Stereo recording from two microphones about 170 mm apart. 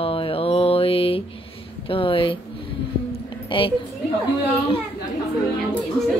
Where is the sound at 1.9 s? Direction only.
30° left (ahead or behind).